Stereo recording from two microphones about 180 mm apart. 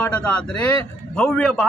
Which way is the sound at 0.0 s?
5° left (ahead or behind).